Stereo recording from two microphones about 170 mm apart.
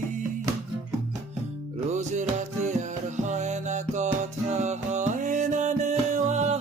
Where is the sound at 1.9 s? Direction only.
45° right (ahead or behind).